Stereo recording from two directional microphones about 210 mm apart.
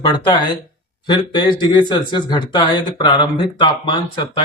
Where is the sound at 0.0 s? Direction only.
20° left (ahead or behind).